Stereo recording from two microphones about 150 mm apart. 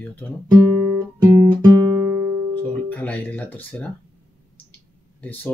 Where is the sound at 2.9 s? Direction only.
10° left (ahead or behind).